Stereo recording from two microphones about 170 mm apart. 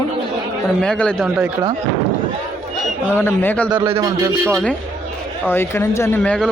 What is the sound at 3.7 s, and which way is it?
Speech, 25° right (ahead or behind).